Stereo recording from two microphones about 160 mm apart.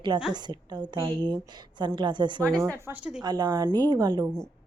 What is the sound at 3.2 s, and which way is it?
Speech, 25° right (ahead or behind).